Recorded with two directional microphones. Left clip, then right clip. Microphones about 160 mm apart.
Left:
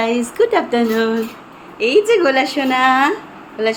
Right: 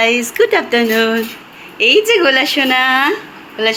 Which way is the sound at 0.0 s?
Centre (ahead or behind).